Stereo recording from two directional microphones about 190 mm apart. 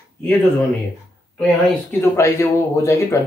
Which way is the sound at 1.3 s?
10° left (ahead or behind).